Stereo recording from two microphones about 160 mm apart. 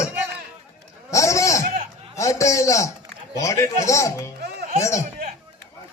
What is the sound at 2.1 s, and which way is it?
A man's voice, 20° left (ahead or behind).